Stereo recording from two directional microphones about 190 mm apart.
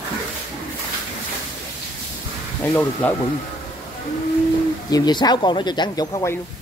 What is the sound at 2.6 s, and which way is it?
Speech, 10° left (ahead or behind).